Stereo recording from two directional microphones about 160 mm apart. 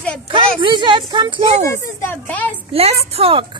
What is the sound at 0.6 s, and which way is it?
Speech, 30° right (ahead or behind).